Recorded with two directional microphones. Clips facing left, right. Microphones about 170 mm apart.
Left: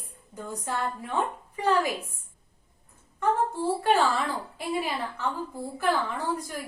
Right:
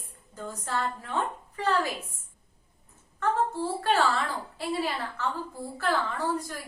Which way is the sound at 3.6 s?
15° left (ahead or behind).